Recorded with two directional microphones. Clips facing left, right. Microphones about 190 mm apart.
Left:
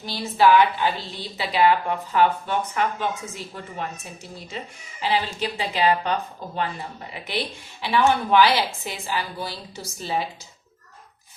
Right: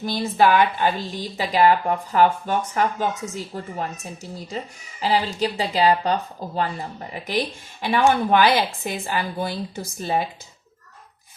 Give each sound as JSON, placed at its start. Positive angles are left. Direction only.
{"t": 0.0, "sound": "a woman's voice", "side_deg": -50}